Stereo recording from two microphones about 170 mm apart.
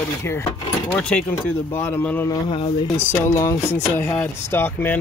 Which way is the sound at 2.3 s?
35° left (ahead or behind).